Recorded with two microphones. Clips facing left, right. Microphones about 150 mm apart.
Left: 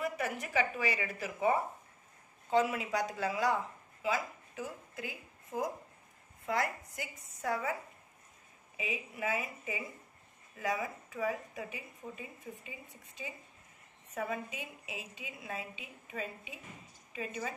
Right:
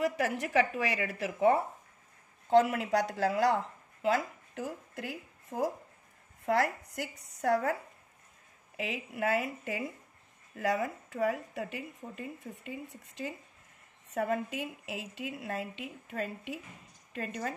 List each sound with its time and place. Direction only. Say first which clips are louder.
0.0 s a woman's voice: right 5 dB; 75° right (ahead or behind)
8.7 s speech: right 4 dB; 70° right (ahead or behind)